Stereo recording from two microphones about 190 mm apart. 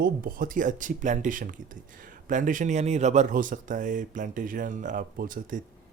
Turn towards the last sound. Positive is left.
turn(degrees=-45)  # may be behind; listen again after turning